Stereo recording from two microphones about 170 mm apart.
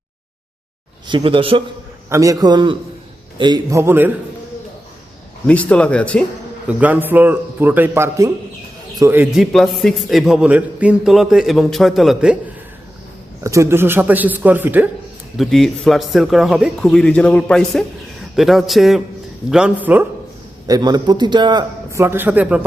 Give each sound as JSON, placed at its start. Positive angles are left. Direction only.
{"t": 1.0, "sound": "speech", "side_deg": -30}
{"t": 2.0, "sound": "a man's voice", "side_deg": -20}
{"t": 5.5, "sound": "speech", "side_deg": 5}
{"t": 6.7, "sound": "speech", "side_deg": -10}
{"t": 13.4, "sound": "speech", "side_deg": -15}
{"t": 15.4, "sound": "speech", "side_deg": 0}
{"t": 20.7, "sound": "a man's voice", "side_deg": -25}